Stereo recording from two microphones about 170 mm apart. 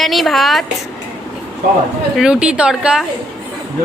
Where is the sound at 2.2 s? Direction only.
5° right (ahead or behind).